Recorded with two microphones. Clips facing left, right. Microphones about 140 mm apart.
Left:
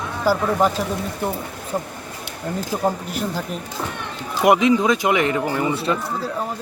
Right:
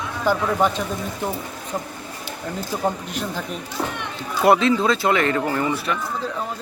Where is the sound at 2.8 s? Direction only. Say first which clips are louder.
Left 2 dB; 5° left (ahead or behind).